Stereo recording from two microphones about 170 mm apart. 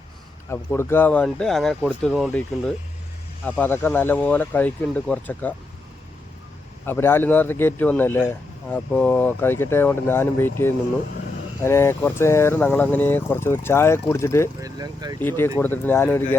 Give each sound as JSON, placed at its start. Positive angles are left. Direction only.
{"t": 0.5, "sound": "speech", "side_deg": 15}
{"t": 6.8, "sound": "speech", "side_deg": 15}
{"t": 14.6, "sound": "speech", "side_deg": -20}
{"t": 15.2, "sound": "speech", "side_deg": 10}